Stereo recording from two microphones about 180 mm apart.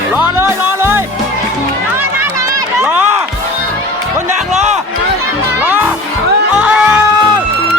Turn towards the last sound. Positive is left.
turn(degrees=-5)  # may be behind; listen again after turning